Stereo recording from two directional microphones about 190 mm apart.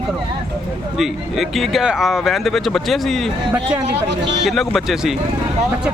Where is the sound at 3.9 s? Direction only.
65° right (ahead or behind).